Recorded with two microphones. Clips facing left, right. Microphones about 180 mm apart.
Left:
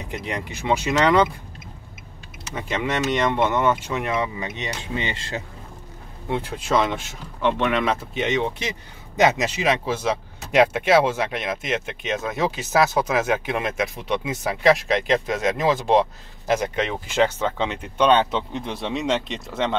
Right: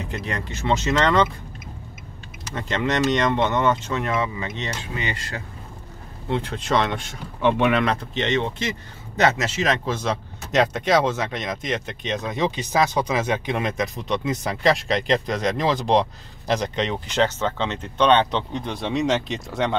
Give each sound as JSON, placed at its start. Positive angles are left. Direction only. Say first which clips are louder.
{"t": 0.1, "sound": "speech", "louder": "even", "side_deg": 15}
{"t": 2.5, "sound": "speech", "louder": "right 1 dB", "side_deg": 10}
{"t": 6.2, "sound": "speech", "louder": "right 1 dB", "side_deg": 10}
{"t": 7.4, "sound": "speech", "louder": "right 2 dB", "side_deg": -10}
{"t": 7.8, "sound": "speech", "louder": "even", "side_deg": 5}